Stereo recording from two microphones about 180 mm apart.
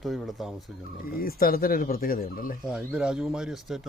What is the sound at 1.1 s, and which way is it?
Speech, 55° left (ahead or behind).